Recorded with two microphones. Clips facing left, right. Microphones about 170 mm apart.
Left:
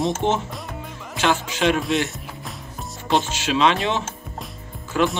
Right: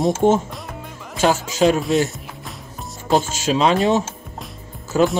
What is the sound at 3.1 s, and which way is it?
Speech, 40° right (ahead or behind).